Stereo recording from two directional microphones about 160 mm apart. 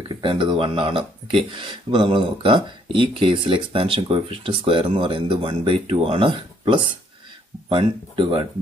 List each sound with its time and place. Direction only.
0.2 s speech: 30° right (ahead or behind)